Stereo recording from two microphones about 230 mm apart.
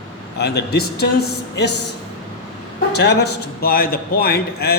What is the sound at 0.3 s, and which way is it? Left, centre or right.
Speech, left.